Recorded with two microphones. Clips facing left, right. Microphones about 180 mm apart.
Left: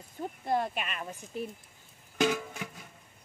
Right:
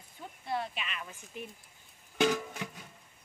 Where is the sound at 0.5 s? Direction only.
50° left (ahead or behind).